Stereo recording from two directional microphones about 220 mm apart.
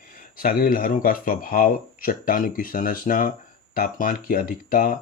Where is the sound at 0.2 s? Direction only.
40° left (ahead or behind).